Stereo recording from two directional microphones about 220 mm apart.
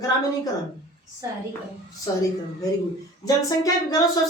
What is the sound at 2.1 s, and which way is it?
Speech, 15° left (ahead or behind).